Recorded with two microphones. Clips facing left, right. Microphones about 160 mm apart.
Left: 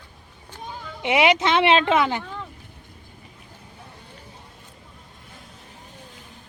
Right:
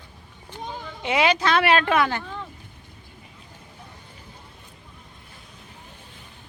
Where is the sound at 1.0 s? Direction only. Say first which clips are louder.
Left 2 dB; 20° left (ahead or behind).